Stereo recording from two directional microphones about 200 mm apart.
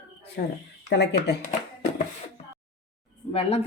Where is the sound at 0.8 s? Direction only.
60° left (ahead or behind).